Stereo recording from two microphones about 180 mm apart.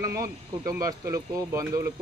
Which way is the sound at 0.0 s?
20° right (ahead or behind).